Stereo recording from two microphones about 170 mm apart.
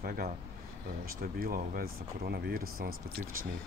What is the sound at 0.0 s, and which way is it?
Speech, 60° right (ahead or behind).